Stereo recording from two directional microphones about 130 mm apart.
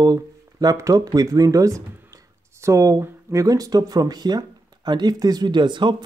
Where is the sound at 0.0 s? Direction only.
30° right (ahead or behind).